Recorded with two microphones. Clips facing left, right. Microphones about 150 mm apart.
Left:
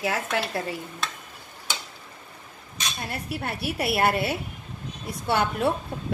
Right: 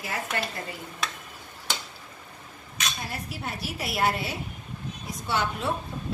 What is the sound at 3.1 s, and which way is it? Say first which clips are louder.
A woman's voice: left 4 dB; 60° left (ahead or behind).